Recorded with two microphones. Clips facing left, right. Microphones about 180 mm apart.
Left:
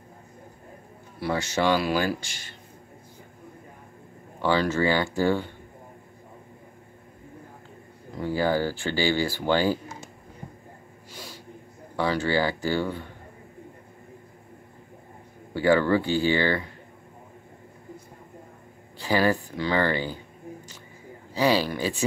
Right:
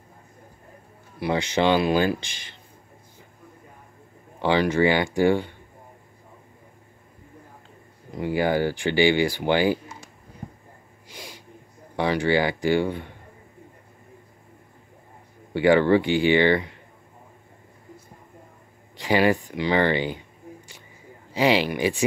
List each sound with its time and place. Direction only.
1.2 s speech: 20° right (ahead or behind)
4.4 s speech: 15° right (ahead or behind)
8.1 s speech: 15° right (ahead or behind)
11.1 s snort: 15° right (ahead or behind)
12.0 s speech: 15° right (ahead or behind)
15.5 s speech: 20° right (ahead or behind)
18.9 s speech: 20° right (ahead or behind)
21.3 s speech: 20° right (ahead or behind)